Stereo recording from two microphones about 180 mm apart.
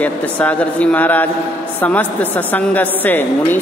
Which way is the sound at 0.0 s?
10° left (ahead or behind).